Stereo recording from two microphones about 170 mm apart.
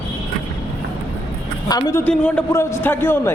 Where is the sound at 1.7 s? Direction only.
20° left (ahead or behind).